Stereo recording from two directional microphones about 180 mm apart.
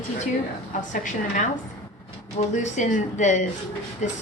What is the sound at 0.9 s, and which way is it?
A woman's voice, 45° left (ahead or behind).